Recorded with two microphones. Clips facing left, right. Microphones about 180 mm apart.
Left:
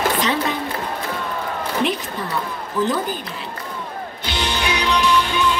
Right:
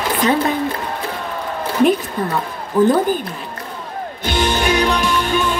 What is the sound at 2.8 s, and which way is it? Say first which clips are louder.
Speech: right 8 dB; 50° right (ahead or behind).